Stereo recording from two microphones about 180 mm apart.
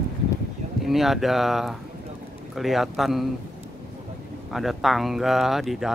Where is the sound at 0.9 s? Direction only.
Centre (ahead or behind).